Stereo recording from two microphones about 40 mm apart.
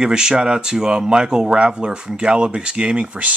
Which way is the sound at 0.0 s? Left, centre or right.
Right.